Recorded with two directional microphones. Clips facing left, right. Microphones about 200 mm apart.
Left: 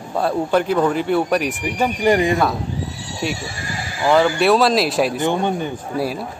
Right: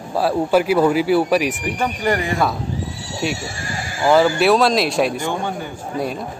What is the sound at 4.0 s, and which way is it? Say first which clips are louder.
A man's voice: right 1 dB; 5° right (ahead or behind).